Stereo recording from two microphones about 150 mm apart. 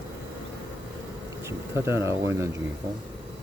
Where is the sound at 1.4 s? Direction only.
15° right (ahead or behind).